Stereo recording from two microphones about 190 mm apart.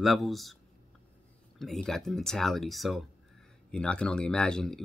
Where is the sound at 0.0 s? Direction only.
Centre (ahead or behind).